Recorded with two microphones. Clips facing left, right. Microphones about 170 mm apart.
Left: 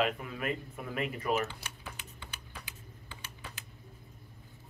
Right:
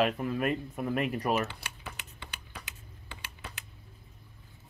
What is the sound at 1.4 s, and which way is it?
Typing, 70° right (ahead or behind).